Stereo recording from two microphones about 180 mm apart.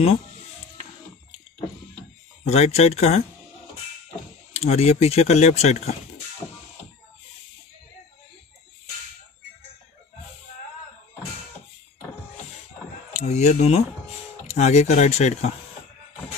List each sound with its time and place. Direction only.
2.4 s speech: 35° left (ahead or behind)
4.6 s speech: 35° left (ahead or behind)
13.1 s speech: 40° left (ahead or behind)